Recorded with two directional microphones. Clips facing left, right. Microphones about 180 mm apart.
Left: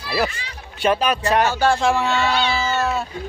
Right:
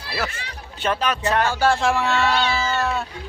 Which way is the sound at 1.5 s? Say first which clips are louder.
Left 1 dB; 5° right (ahead or behind).